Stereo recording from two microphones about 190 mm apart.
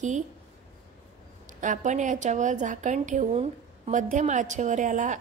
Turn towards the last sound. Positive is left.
turn(degrees=-40)  # may be behind; listen again after turning